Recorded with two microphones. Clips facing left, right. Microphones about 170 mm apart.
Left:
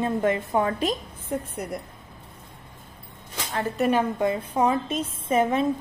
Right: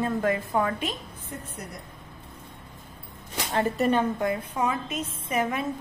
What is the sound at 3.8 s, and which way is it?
Speech, 10° left (ahead or behind).